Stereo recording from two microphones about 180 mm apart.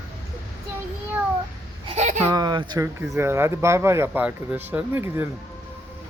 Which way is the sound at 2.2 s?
20° right (ahead or behind).